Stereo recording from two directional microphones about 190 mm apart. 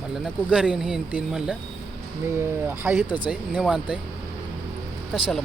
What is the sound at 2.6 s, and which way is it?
Speech, 10° right (ahead or behind).